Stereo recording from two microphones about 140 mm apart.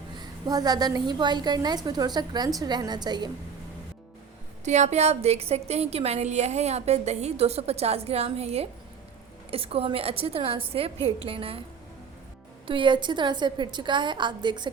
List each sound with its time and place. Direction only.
0.2 s a woman's voice: 30° right (ahead or behind)
4.6 s a woman's voice: 55° right (ahead or behind)
12.6 s a woman's voice: 35° right (ahead or behind)